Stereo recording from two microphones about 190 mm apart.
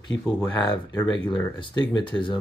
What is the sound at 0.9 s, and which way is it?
Speech, 20° left (ahead or behind).